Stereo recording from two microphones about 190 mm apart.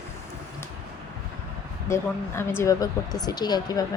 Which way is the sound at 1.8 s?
15° left (ahead or behind).